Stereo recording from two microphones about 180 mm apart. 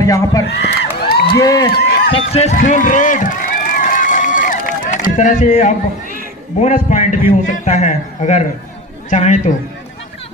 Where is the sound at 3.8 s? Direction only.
45° left (ahead or behind).